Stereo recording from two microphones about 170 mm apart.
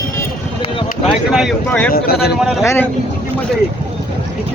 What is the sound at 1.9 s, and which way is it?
Speech, 65° left (ahead or behind).